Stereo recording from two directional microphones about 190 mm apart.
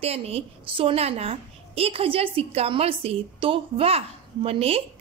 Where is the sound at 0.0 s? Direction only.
30° right (ahead or behind).